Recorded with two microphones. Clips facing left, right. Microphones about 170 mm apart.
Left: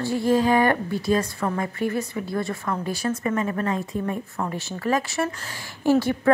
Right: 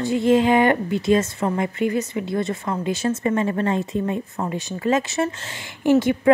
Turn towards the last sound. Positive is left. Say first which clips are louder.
# right 3 dB
turn(degrees=-20)  # may be behind; listen again after turning